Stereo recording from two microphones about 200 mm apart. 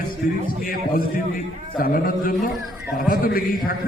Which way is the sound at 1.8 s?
45° left (ahead or behind).